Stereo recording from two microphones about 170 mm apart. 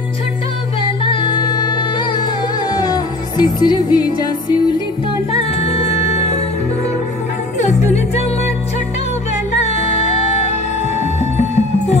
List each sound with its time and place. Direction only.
1.0 s music: 30° left (ahead or behind)
5.3 s music: 35° left (ahead or behind)
7.6 s music: 40° left (ahead or behind)
9.6 s music: 40° left (ahead or behind)